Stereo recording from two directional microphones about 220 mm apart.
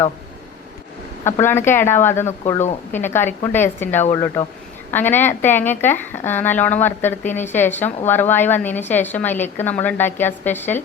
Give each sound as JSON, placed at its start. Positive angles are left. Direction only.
{"t": 1.2, "sound": "speech", "side_deg": 10}